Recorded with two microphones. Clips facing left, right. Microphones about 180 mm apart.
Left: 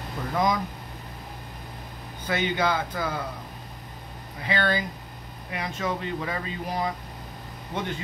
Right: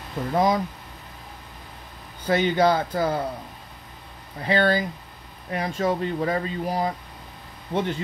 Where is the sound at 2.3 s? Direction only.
35° right (ahead or behind).